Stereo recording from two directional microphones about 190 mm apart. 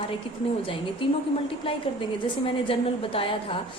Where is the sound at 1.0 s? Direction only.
30° left (ahead or behind).